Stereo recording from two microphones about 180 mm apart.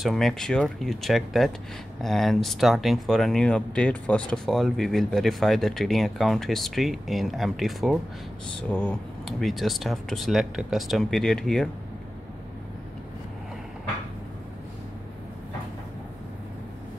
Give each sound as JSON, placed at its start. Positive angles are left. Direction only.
{"t": 0.0, "sound": "speech", "side_deg": 0}